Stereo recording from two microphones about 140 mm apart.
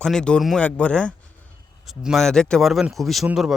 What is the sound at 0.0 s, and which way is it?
Speech, 5° left (ahead or behind).